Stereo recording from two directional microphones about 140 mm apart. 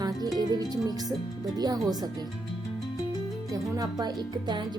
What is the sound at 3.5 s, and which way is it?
Speech, 25° right (ahead or behind).